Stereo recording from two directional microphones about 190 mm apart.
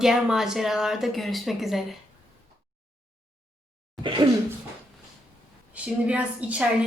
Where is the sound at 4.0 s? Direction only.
25° right (ahead or behind).